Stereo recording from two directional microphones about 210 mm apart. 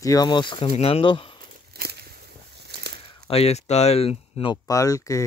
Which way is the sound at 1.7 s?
50° right (ahead or behind).